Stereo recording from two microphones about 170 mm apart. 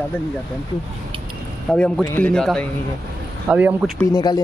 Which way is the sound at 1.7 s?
5° left (ahead or behind).